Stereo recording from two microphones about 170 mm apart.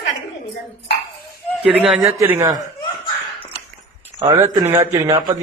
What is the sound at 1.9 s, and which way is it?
Speech, 10° right (ahead or behind).